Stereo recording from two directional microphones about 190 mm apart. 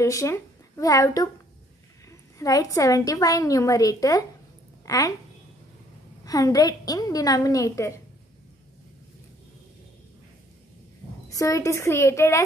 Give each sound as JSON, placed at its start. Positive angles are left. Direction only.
{"t": 0.0, "sound": "a woman's voice", "side_deg": 15}
{"t": 2.3, "sound": "a woman's voice", "side_deg": 15}
{"t": 6.2, "sound": "a woman's voice", "side_deg": 20}
{"t": 11.2, "sound": "a woman's voice", "side_deg": 15}